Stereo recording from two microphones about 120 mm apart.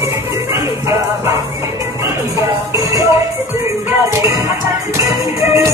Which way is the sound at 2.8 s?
30° right (ahead or behind).